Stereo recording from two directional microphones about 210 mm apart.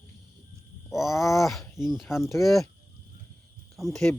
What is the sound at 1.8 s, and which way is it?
Speech, centre (ahead or behind).